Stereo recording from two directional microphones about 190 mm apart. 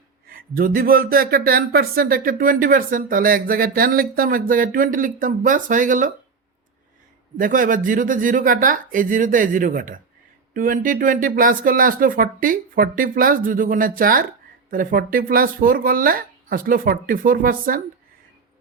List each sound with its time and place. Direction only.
0.3 s speech: 50° right (ahead or behind)
7.3 s speech: 45° right (ahead or behind)